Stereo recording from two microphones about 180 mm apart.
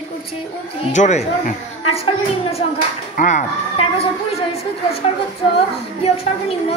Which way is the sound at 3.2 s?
40° left (ahead or behind).